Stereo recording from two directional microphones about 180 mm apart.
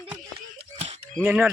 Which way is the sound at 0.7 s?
35° right (ahead or behind).